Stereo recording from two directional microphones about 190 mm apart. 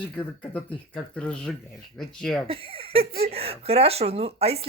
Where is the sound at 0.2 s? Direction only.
5° left (ahead or behind).